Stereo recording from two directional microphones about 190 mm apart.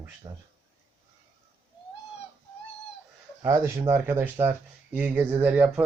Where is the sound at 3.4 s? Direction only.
15° right (ahead or behind).